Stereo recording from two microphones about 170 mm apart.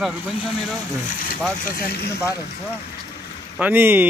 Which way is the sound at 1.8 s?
65° left (ahead or behind).